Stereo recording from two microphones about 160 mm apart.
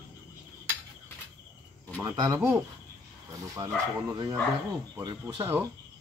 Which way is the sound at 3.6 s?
25° right (ahead or behind).